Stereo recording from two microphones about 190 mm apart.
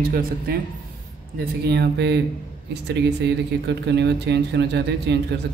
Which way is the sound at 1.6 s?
60° right (ahead or behind).